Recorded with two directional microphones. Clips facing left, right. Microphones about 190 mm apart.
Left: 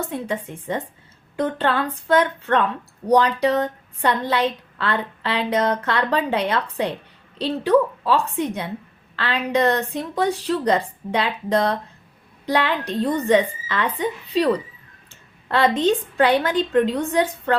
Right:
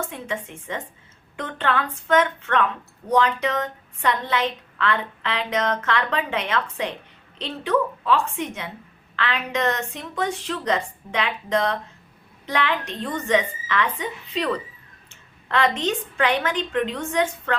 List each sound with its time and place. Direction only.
0.0 s a woman's voice: 35° left (ahead or behind)